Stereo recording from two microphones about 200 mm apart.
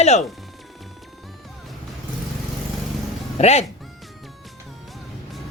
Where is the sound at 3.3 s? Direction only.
30° left (ahead or behind).